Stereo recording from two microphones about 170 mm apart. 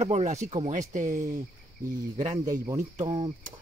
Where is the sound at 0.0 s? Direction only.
40° right (ahead or behind).